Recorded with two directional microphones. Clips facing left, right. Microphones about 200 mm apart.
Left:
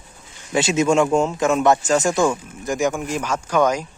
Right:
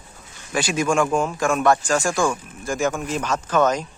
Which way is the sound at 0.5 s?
25° left (ahead or behind).